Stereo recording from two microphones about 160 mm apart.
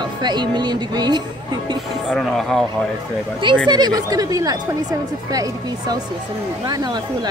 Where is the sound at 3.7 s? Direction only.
25° right (ahead or behind).